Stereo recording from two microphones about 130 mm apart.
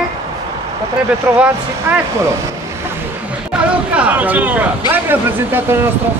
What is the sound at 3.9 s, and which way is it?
Speech, 10° right (ahead or behind).